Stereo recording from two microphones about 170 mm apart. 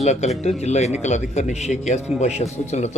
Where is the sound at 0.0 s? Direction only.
40° left (ahead or behind).